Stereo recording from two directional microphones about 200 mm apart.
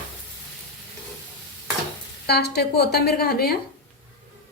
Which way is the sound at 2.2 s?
55° left (ahead or behind).